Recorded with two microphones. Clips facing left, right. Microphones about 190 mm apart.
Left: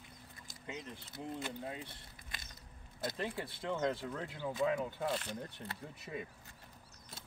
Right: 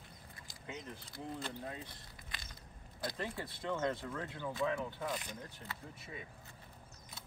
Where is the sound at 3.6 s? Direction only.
Centre (ahead or behind).